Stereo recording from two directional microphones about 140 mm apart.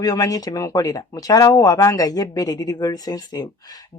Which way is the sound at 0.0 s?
25° left (ahead or behind).